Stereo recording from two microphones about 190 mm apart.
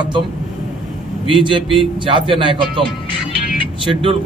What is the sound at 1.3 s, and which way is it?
A man's voice, 25° right (ahead or behind).